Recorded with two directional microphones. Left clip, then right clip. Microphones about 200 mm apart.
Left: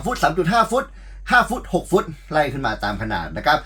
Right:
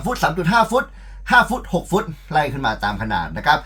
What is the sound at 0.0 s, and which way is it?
Speech, 15° right (ahead or behind).